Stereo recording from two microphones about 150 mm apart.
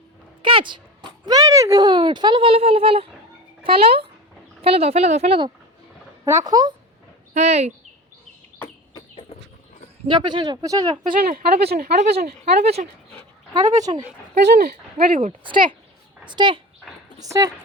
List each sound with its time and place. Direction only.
0.4 s speech: 35° right (ahead or behind)
6.2 s speech: 20° right (ahead or behind)
7.3 s speech: 45° right (ahead or behind)
8.9 s chicken: 30° left (ahead or behind)
10.0 s speech: 30° right (ahead or behind)
11.0 s speech: 70° right (ahead or behind); by 12.7 s 90° right
13.7 s speech: 25° right (ahead or behind)
14.4 s speech: 90° right
15.0 s speech: 65° right (ahead or behind)
15.3 s a woman's voice: 35° right (ahead or behind)